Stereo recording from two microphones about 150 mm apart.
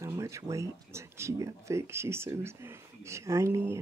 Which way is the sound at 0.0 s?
20° right (ahead or behind).